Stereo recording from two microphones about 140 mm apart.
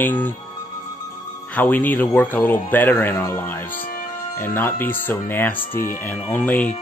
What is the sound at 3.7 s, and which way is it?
Music, 90° left.